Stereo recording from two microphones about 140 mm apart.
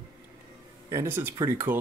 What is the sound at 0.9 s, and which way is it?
Speech, 20° right (ahead or behind).